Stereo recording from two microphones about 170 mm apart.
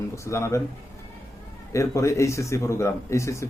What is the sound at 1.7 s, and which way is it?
Speech, 15° left (ahead or behind).